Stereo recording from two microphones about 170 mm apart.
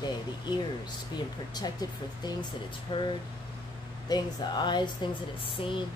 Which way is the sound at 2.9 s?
30° left (ahead or behind).